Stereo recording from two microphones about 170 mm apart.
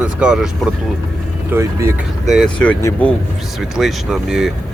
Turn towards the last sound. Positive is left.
turn(degrees=0)  # may be behind; listen again after turning